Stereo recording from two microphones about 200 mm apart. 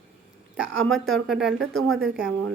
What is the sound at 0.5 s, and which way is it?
Speech, centre (ahead or behind).